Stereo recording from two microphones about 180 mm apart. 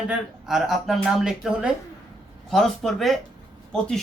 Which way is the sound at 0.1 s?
Centre (ahead or behind).